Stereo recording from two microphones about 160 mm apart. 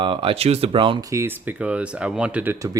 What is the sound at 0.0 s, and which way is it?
Speech, 35° right (ahead or behind).